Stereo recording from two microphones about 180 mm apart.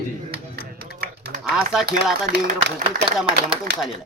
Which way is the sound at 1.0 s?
60° right (ahead or behind).